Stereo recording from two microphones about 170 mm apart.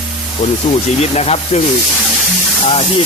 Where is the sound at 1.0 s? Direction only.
40° left (ahead or behind).